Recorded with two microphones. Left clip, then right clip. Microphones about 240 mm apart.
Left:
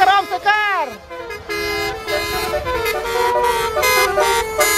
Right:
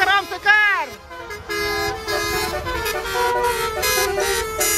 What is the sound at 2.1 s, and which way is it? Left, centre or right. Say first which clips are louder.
Vehicle: left 3 dB; left.